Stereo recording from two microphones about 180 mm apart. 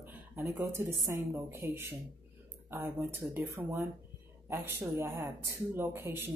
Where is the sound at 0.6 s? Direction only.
15° right (ahead or behind).